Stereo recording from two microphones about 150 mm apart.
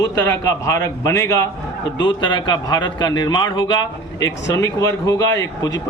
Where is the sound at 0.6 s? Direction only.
20° left (ahead or behind).